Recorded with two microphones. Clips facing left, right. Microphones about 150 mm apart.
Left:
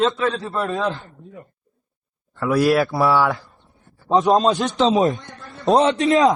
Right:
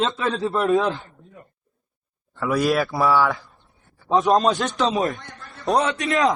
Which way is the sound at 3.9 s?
Centre (ahead or behind).